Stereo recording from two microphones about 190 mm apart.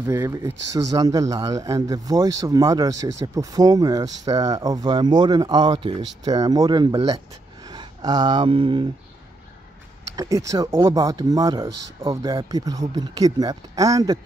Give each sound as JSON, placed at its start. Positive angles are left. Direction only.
{"t": 0.0, "sound": "speech", "side_deg": -15}
{"t": 10.1, "sound": "speech", "side_deg": -15}